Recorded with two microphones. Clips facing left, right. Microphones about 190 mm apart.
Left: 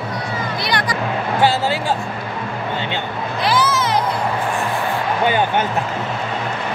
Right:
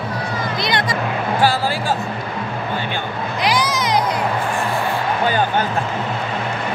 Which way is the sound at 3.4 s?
15° right (ahead or behind).